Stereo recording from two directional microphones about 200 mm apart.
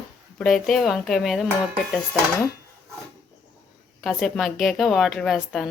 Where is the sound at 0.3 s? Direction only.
Centre (ahead or behind).